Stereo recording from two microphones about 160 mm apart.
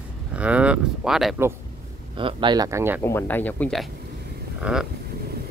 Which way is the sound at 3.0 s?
15° left (ahead or behind).